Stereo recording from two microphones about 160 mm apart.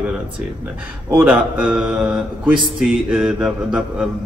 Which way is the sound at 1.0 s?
10° right (ahead or behind).